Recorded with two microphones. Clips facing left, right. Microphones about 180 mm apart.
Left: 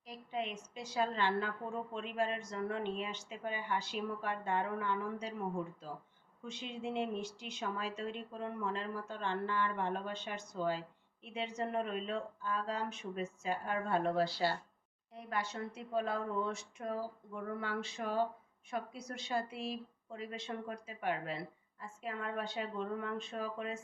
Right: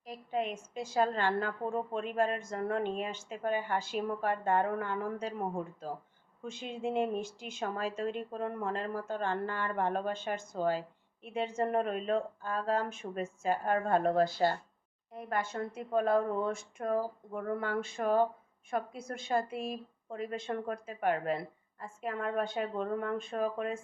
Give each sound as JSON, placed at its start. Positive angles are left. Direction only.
{"t": 0.0, "sound": "speech", "side_deg": -50}